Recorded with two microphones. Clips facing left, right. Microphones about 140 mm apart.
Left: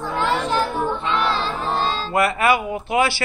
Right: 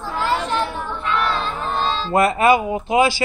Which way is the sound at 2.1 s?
25° right (ahead or behind).